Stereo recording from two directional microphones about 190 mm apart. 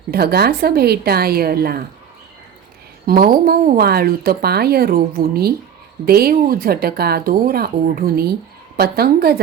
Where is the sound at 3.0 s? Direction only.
50° right (ahead or behind).